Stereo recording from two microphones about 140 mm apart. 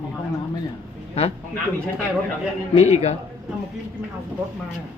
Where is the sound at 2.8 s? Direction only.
50° left (ahead or behind).